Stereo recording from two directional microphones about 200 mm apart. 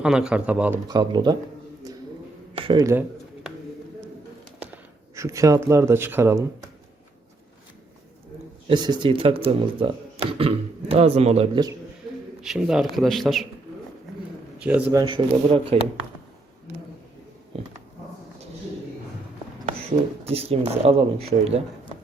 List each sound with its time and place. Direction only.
0.0 s speech: 5° right (ahead or behind)
0.9 s speech: 20° right (ahead or behind)
2.6 s a sound: 25° right (ahead or behind)
5.1 s speech: 15° right (ahead or behind)
8.6 s speech: 20° right (ahead or behind)
12.4 s speech: 5° right (ahead or behind)
14.6 s speech: 5° right (ahead or behind)
15.0 s speech: 25° right (ahead or behind)
20.2 s speech: 30° right (ahead or behind)